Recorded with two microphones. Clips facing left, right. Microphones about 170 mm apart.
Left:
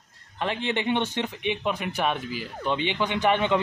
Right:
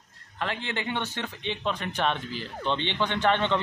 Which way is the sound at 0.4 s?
20° left (ahead or behind).